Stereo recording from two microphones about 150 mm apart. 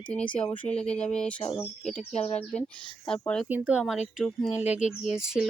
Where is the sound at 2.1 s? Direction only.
45° left (ahead or behind).